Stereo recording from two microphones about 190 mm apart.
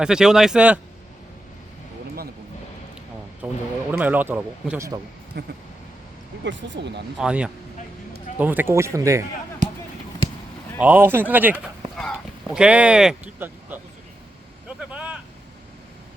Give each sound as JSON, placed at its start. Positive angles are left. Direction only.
{"t": 0.0, "sound": "a man's voice", "side_deg": -5}
{"t": 3.4, "sound": "a sound", "side_deg": -10}
{"t": 3.9, "sound": "speech", "side_deg": -10}
{"t": 5.3, "sound": "speech", "side_deg": -60}
{"t": 6.4, "sound": "speech", "side_deg": -70}
{"t": 7.2, "sound": "a man's voice", "side_deg": -5}
{"t": 10.8, "sound": "speech", "side_deg": -10}
{"t": 14.8, "sound": "vehicle", "side_deg": -5}